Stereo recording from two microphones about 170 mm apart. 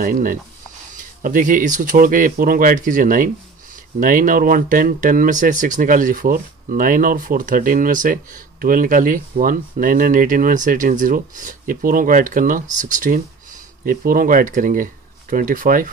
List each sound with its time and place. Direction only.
0.0 s speech: 55° right (ahead or behind)